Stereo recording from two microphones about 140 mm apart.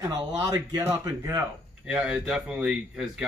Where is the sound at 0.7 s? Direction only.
20° right (ahead or behind).